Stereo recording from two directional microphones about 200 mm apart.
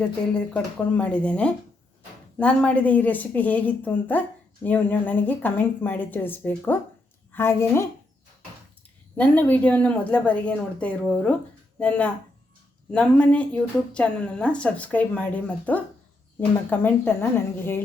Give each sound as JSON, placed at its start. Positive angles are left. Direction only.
{"t": 0.3, "sound": "speech", "side_deg": 5}
{"t": 9.1, "sound": "speech", "side_deg": 10}